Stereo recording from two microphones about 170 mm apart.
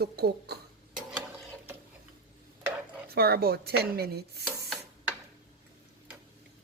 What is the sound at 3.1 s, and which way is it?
Speech, 65° right (ahead or behind).